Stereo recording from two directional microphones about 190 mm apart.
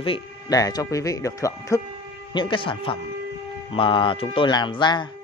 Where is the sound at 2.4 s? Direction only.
25° left (ahead or behind).